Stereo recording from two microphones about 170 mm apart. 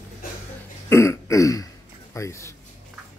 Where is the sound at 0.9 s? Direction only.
15° left (ahead or behind).